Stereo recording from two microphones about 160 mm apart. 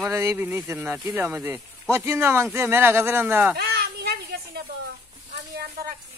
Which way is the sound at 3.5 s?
75° right (ahead or behind).